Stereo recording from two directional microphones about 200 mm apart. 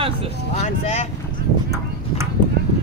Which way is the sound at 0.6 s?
35° left (ahead or behind).